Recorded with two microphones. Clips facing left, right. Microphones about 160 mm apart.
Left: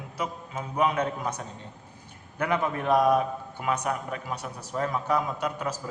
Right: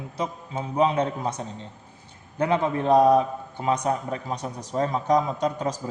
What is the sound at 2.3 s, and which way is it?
A man's voice, 30° right (ahead or behind).